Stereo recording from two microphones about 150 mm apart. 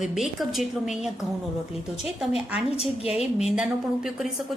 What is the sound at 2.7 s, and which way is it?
Speech, 40° left (ahead or behind).